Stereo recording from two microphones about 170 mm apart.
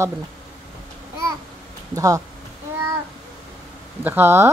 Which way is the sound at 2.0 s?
20° right (ahead or behind).